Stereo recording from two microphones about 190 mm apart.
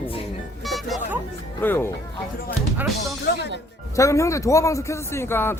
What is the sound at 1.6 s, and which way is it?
Speech, 10° left (ahead or behind).